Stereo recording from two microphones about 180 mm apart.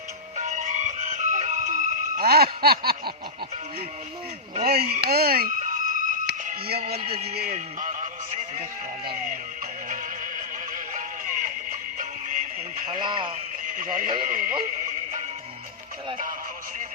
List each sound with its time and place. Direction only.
0.3 s music: 45° right (ahead or behind); by 2.9 s 60° right (ahead or behind)
4.6 s music: 60° right (ahead or behind); by 8.1 s 45° right (ahead or behind)
9.9 s music: 45° right (ahead or behind)
13.0 s a man's voice: 25° right (ahead or behind)
13.7 s speech: 45° right (ahead or behind)